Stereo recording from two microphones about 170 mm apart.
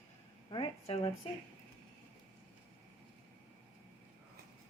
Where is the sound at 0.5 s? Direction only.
30° left (ahead or behind).